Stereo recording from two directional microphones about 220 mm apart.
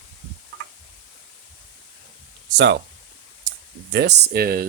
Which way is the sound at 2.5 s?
55° right (ahead or behind).